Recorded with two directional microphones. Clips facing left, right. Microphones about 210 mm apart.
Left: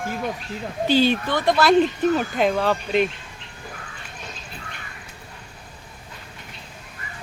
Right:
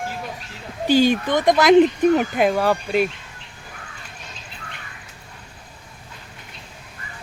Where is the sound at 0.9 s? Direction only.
15° right (ahead or behind).